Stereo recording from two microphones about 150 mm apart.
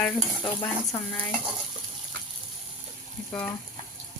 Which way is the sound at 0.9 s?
15° left (ahead or behind).